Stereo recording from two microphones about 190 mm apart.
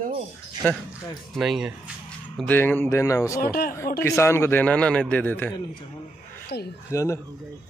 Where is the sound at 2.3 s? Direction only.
10° left (ahead or behind).